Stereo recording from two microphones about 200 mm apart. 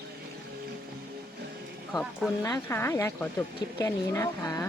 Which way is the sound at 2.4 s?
15° left (ahead or behind).